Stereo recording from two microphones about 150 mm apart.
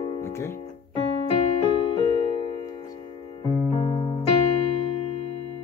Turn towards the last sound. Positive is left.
turn(degrees=40)  # may be behind; listen again after turning